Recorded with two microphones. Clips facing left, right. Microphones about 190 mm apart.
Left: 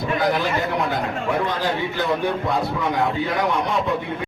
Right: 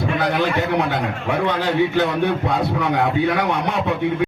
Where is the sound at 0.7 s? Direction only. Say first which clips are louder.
Right 3 dB; 70° right (ahead or behind).